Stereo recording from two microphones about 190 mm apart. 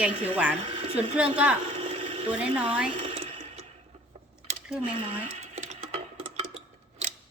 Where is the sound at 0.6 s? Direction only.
30° right (ahead or behind).